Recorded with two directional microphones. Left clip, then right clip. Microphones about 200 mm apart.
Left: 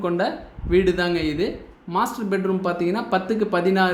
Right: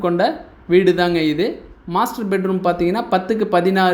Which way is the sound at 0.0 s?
30° right (ahead or behind).